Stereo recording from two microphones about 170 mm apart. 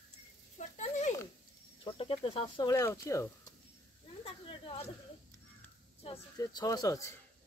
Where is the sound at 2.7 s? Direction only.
15° left (ahead or behind).